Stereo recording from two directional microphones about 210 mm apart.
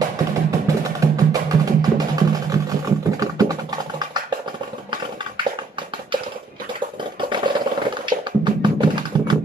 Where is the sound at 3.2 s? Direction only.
15° right (ahead or behind).